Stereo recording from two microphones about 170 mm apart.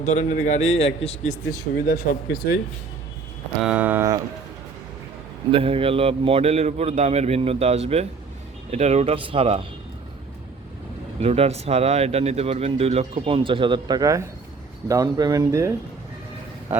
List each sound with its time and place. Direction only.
0.0 s a man's voice: 45° left (ahead or behind)
1.3 s speech: 60° left (ahead or behind)
3.6 s speech: 10° right (ahead or behind)
5.5 s speech: 35° right (ahead or behind)
11.2 s speech: 35° right (ahead or behind); by 15.7 s 20° right (ahead or behind)